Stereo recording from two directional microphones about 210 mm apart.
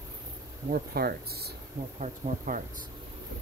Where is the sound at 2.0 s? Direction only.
35° right (ahead or behind).